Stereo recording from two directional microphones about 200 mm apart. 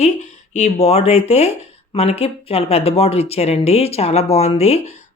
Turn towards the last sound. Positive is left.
turn(degrees=35)  # may be behind; listen again after turning